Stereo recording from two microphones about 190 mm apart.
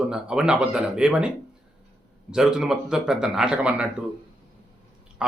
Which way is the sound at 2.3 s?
Centre (ahead or behind).